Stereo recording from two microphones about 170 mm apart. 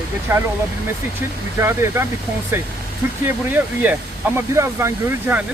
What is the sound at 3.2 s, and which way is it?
Speech, 10° right (ahead or behind).